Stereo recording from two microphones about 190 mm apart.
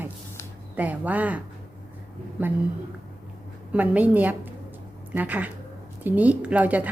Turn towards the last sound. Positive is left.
turn(degrees=-10)  # may be behind; listen again after turning